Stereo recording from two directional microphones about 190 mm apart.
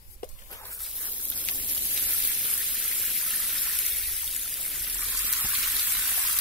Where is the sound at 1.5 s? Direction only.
5° right (ahead or behind).